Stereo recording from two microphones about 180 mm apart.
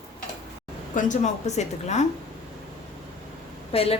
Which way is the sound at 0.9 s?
45° left (ahead or behind).